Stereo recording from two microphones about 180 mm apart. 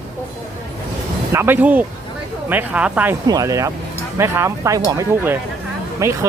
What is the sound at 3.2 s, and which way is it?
Speech, 20° right (ahead or behind).